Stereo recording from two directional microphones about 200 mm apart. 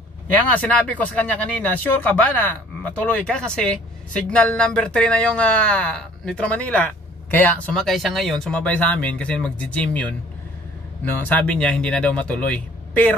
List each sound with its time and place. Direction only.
0.5 s speech: 5° left (ahead or behind)